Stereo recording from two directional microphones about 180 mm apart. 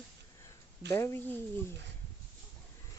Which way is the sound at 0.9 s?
15° left (ahead or behind).